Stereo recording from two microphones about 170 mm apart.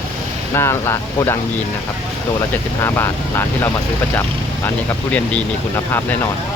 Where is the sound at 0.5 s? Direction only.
15° left (ahead or behind).